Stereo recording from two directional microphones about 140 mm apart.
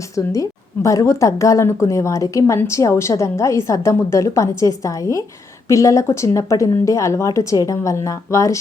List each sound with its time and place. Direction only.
0.3 s speech: 25° left (ahead or behind)